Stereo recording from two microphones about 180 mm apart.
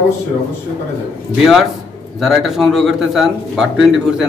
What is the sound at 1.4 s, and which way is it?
Speech, centre (ahead or behind).